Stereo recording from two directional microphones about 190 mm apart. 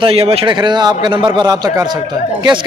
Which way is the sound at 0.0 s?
30° right (ahead or behind).